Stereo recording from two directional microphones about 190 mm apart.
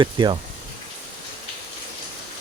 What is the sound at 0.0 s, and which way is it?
Speech, 25° right (ahead or behind).